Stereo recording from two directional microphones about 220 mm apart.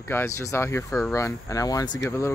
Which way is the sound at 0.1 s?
10° left (ahead or behind).